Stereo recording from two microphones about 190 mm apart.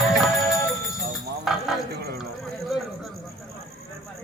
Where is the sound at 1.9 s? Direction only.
55° right (ahead or behind).